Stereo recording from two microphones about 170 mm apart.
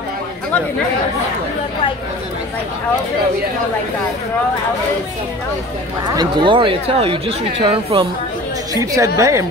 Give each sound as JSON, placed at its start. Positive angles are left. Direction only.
{"t": 6.1, "sound": "speech", "side_deg": -30}
{"t": 8.9, "sound": "a woman's voice", "side_deg": -20}